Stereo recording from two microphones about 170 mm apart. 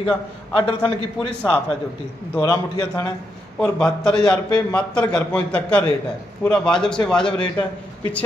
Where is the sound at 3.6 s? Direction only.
5° left (ahead or behind).